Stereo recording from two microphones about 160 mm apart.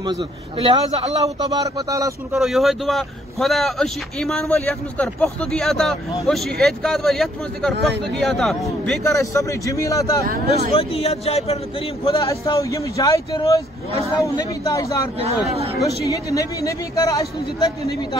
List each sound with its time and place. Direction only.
0.0 s a man's voice: 30° right (ahead or behind)
1.5 s speech: 25° right (ahead or behind)
2.3 s speech: centre (ahead or behind)
9.0 s speech: 20° left (ahead or behind)
10.7 s a man's voice: 40° left (ahead or behind)
12.2 s speech: 20° left (ahead or behind)
16.1 s speech: 20° left (ahead or behind)